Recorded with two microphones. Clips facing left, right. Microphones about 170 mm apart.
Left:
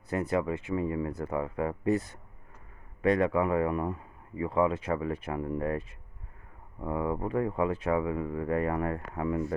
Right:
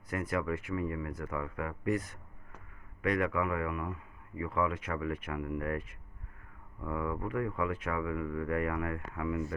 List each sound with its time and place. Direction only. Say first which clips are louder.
0.1 s speech: left 4 dB; 25° left (ahead or behind)